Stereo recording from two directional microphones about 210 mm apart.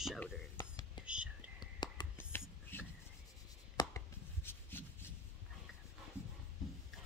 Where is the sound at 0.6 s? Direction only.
20° left (ahead or behind).